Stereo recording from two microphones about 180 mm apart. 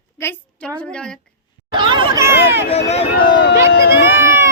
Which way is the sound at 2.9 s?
30° left (ahead or behind).